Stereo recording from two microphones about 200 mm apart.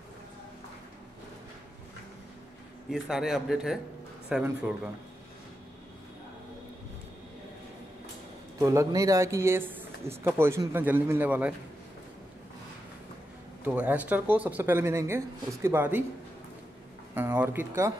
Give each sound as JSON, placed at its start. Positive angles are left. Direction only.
{"t": 2.9, "sound": "a man's voice", "side_deg": 0}
{"t": 8.5, "sound": "speech", "side_deg": -15}
{"t": 13.7, "sound": "speech", "side_deg": -5}
{"t": 17.1, "sound": "speech", "side_deg": -10}